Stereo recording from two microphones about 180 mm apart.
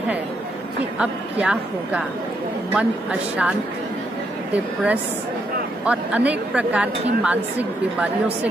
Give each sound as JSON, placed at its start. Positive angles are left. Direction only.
{"t": 0.9, "sound": "a woman's voice", "side_deg": -5}
{"t": 5.9, "sound": "a woman's voice", "side_deg": -5}